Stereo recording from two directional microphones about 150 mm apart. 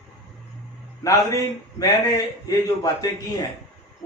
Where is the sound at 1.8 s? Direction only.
25° left (ahead or behind).